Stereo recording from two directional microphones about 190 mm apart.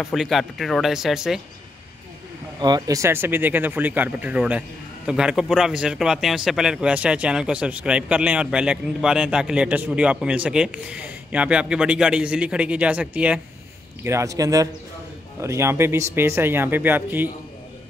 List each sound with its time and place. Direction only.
0.0 s speech: centre (ahead or behind)
2.6 s speech: 20° right (ahead or behind)